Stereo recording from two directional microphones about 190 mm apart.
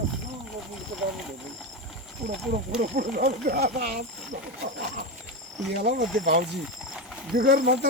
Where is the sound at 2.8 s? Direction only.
45° right (ahead or behind).